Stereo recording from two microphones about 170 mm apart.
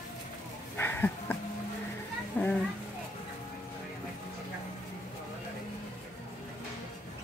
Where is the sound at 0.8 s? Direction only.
10° left (ahead or behind).